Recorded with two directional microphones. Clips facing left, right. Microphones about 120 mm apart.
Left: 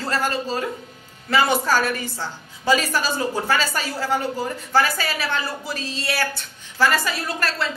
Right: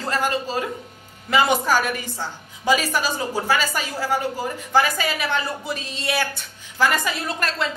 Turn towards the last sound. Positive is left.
turn(degrees=-20)  # may be behind; listen again after turning